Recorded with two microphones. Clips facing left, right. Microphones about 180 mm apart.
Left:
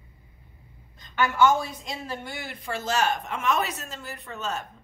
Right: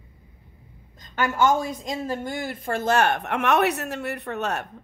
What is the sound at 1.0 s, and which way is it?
A woman's voice, 40° right (ahead or behind).